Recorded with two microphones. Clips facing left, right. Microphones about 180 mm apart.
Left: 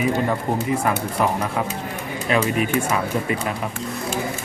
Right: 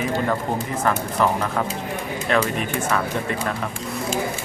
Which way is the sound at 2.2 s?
5° left (ahead or behind).